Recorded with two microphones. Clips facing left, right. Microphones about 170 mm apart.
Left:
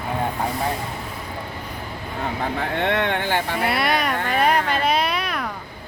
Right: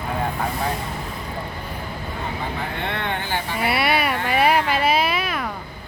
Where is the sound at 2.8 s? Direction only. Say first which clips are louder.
Left 7 dB; 90° left; by 3.4 s 65° left (ahead or behind).